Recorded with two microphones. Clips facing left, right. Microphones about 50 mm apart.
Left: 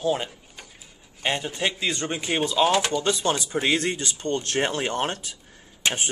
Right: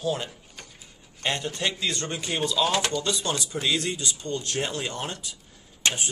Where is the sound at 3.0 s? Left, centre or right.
Left.